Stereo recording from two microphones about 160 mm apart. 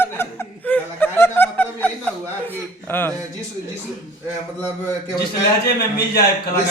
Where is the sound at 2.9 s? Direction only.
10° left (ahead or behind).